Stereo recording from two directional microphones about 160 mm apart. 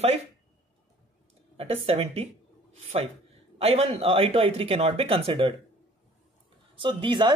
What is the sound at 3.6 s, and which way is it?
Speech, 40° right (ahead or behind).